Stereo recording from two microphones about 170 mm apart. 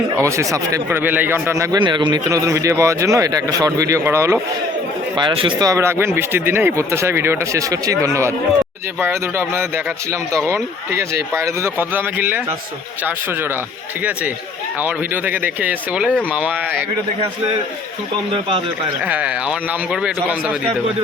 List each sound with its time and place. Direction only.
0.2 s speech: 15° right (ahead or behind)
5.1 s speech: 30° right (ahead or behind); by 16.8 s 10° right (ahead or behind)
19.0 s speech: 10° right (ahead or behind)